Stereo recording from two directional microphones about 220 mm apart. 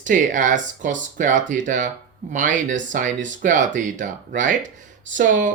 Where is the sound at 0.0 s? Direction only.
35° right (ahead or behind).